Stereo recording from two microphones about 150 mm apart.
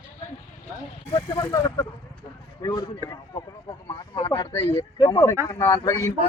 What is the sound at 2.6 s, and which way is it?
Speech, 25° left (ahead or behind).